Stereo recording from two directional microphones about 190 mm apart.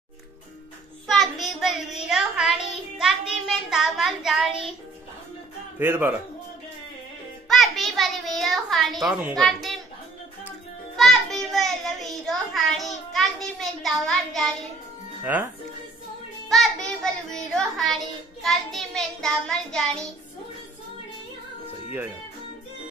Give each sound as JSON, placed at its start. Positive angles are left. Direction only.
{"t": 1.0, "sound": "child singing", "side_deg": 0}
{"t": 2.0, "sound": "a child's voice", "side_deg": 0}
{"t": 5.8, "sound": "speech", "side_deg": -10}
{"t": 7.4, "sound": "child singing", "side_deg": 0}
{"t": 11.0, "sound": "a child's voice", "side_deg": 0}
{"t": 15.3, "sound": "speech", "side_deg": -10}
{"t": 16.4, "sound": "child singing", "side_deg": 0}